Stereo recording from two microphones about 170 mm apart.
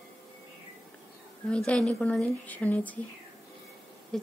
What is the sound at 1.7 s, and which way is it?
A woman's voice, 5° left (ahead or behind).